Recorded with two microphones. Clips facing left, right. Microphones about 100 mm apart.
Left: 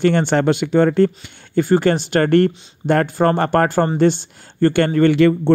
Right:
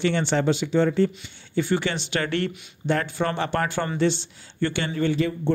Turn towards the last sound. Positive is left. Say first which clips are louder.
# left 10 dB
turn(degrees=70)  # may be behind; listen again after turning